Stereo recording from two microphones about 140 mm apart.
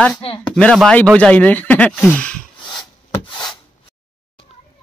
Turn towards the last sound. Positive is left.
turn(degrees=30)  # may be behind; listen again after turning